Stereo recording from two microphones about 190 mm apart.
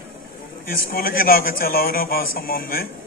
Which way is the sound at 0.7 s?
50° left (ahead or behind).